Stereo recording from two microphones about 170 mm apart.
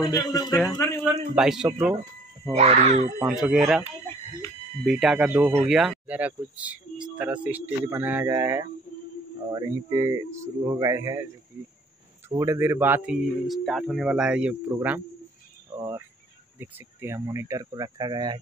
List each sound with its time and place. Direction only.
0.0 s speech: 20° left (ahead or behind)
1.3 s speech: 5° right (ahead or behind)
2.5 s speech: 40° right (ahead or behind)
3.2 s speech: 5° right (ahead or behind)
5.7 s speech: 5° right (ahead or behind); by 11.2 s 20° right (ahead or behind)
12.3 s speech: 20° right (ahead or behind)
15.7 s speech: 20° right (ahead or behind)